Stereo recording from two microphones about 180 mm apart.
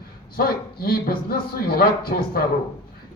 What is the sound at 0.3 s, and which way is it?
A man's voice, 55° left (ahead or behind).